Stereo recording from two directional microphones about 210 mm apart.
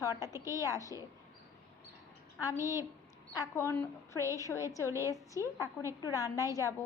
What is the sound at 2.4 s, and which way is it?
A woman's voice, 15° left (ahead or behind).